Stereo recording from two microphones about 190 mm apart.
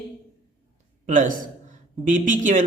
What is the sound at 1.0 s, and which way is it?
A man's voice, 45° right (ahead or behind).